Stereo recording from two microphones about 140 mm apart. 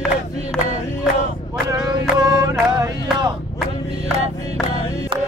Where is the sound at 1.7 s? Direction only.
30° right (ahead or behind).